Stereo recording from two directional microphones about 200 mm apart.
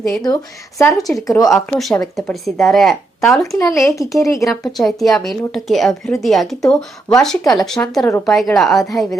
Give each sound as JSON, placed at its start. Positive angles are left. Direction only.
{"t": 0.8, "sound": "speech", "side_deg": 15}
{"t": 1.0, "sound": "a woman's voice", "side_deg": 0}
{"t": 3.8, "sound": "speech", "side_deg": 15}
{"t": 4.6, "sound": "a woman's voice", "side_deg": 0}